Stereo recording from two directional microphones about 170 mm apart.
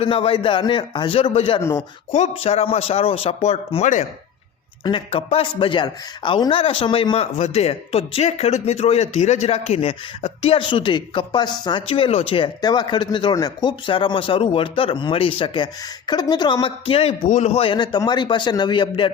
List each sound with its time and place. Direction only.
0.0 s a man's voice: 30° left (ahead or behind)
4.8 s a man's voice: 30° left (ahead or behind)